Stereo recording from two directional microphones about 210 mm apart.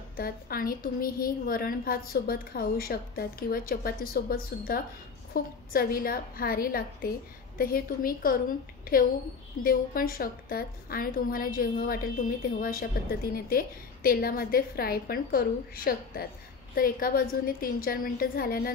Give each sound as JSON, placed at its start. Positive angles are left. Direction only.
{"t": 0.1, "sound": "a woman's voice", "side_deg": 45}